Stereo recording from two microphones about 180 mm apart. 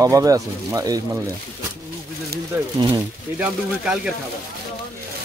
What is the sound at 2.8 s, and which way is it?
Speech, 15° right (ahead or behind).